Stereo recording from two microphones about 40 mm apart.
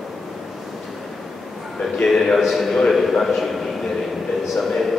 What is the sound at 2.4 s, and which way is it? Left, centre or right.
Speech, centre.